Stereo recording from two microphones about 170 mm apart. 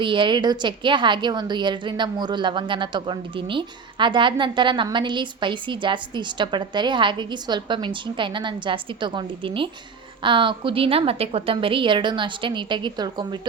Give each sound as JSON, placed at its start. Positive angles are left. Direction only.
{"t": 0.0, "sound": "a woman's voice", "side_deg": -30}